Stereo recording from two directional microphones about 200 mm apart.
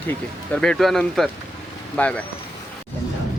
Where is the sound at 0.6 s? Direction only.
Centre (ahead or behind).